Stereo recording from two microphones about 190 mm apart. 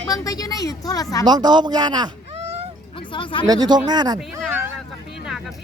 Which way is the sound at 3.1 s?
25° left (ahead or behind).